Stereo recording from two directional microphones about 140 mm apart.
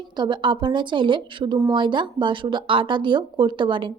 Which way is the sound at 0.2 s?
35° right (ahead or behind).